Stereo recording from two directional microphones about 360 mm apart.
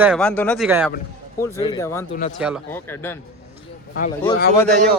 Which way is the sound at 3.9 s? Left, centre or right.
Centre.